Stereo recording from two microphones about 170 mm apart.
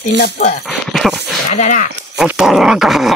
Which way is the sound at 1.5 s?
45° left (ahead or behind).